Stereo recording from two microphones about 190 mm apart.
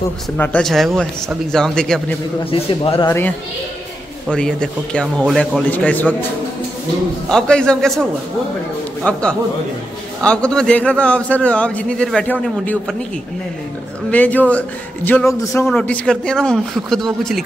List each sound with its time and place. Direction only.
0.4 s a man's voice: 5° left (ahead or behind)
2.5 s a man's voice: 30° left (ahead or behind)
3.1 s a man's voice: 10° left (ahead or behind)
7.2 s a man's voice: 5° left (ahead or behind)
9.0 s a man's voice: 10° left (ahead or behind)
10.2 s a man's voice: 5° left (ahead or behind)
14.1 s a man's voice: 10° left (ahead or behind)